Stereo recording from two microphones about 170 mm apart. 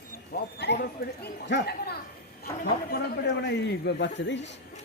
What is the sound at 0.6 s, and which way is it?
Speech, 85° left.